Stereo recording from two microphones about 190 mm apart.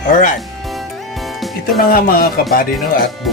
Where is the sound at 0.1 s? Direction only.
45° left (ahead or behind).